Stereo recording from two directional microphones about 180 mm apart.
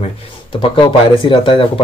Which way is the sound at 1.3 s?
30° left (ahead or behind).